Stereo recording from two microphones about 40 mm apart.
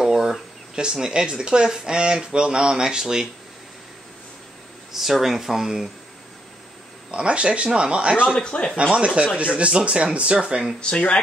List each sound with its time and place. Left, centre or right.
0.0 s speech: centre
4.9 s speech: centre
7.1 s speech: right
8.4 s speech: left
8.9 s speech: right
10.8 s speech: left